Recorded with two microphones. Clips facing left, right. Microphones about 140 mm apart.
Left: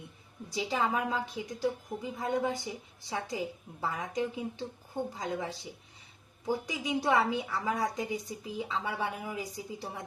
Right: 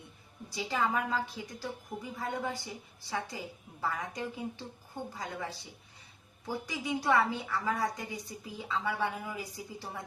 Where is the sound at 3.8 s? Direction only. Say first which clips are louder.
Left 3 dB; 20° left (ahead or behind).